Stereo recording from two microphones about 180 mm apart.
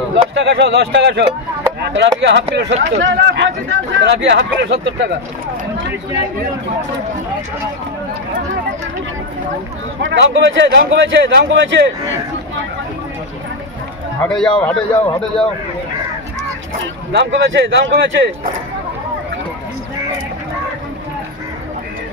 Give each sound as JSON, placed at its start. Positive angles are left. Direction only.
{"t": 0.3, "sound": "speech", "side_deg": -80}
{"t": 10.0, "sound": "speech", "side_deg": -85}
{"t": 14.2, "sound": "a man's voice", "side_deg": 5}
{"t": 17.1, "sound": "speech", "side_deg": -75}